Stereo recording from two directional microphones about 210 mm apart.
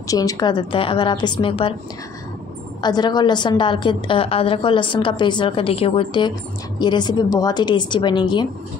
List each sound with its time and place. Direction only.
0.1 s a woman's voice: 15° left (ahead or behind)
2.8 s a woman's voice: 20° left (ahead or behind)